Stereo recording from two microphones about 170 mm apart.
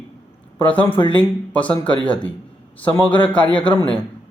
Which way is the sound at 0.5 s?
10° left (ahead or behind).